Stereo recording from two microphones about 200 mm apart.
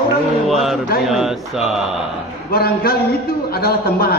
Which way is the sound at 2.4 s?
50° left (ahead or behind).